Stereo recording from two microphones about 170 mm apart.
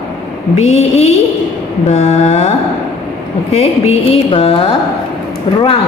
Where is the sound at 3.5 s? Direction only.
40° left (ahead or behind).